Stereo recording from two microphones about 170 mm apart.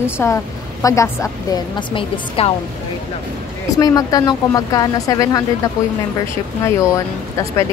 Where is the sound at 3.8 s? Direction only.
20° left (ahead or behind).